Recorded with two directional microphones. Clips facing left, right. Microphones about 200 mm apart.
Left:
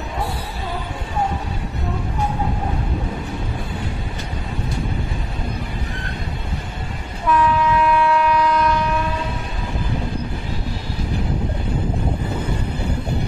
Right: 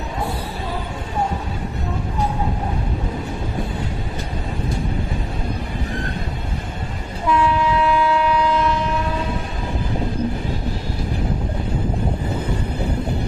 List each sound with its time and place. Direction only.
7.2 s train: 25° right (ahead or behind)